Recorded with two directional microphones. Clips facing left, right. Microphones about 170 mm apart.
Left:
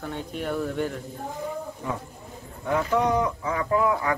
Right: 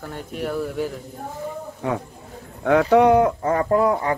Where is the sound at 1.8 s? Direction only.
70° right (ahead or behind).